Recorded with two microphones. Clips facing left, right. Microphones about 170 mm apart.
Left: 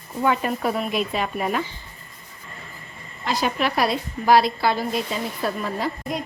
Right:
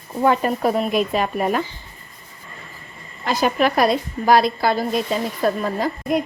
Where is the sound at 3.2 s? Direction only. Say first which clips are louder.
Right 5 dB; 50° right (ahead or behind).